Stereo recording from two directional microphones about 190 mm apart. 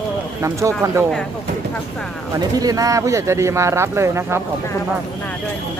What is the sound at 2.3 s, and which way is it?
Speech, 20° right (ahead or behind).